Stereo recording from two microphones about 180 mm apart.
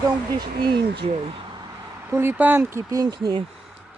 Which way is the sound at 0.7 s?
65° right (ahead or behind).